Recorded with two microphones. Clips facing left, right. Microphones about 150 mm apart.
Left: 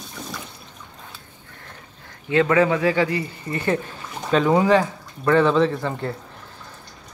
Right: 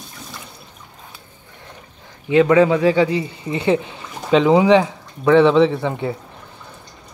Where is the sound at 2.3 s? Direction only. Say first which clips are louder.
Right 5 dB; 20° right (ahead or behind).